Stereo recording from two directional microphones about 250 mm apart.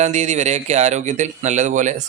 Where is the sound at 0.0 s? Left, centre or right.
Right.